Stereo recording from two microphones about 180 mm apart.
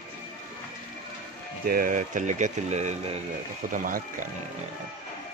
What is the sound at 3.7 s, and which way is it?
Speech, 50° right (ahead or behind).